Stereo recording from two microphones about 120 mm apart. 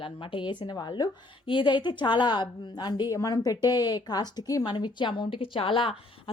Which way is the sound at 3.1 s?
30° left (ahead or behind).